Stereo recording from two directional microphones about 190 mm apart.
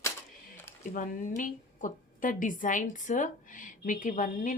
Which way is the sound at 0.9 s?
45° left (ahead or behind).